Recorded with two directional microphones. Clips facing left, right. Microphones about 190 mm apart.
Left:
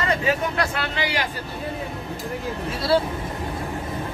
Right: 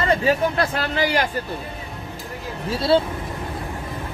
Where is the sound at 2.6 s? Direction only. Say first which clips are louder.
Right 3 dB; 25° right (ahead or behind).